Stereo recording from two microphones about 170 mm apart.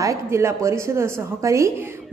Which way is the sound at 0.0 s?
15° right (ahead or behind).